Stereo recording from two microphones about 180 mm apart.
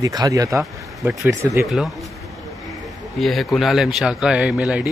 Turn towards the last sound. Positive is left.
turn(degrees=-5)  # may be behind; listen again after turning